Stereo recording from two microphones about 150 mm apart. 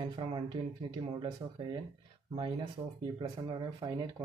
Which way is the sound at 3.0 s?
30° right (ahead or behind).